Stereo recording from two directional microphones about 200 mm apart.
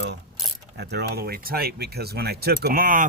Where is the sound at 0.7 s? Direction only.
55° right (ahead or behind).